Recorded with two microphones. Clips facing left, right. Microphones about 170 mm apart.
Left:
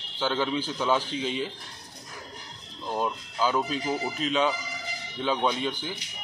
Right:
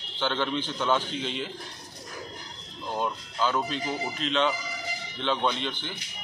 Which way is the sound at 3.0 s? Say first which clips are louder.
Left 1 dB; 5° left (ahead or behind).